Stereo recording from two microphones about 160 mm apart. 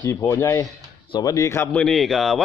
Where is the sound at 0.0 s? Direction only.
20° left (ahead or behind).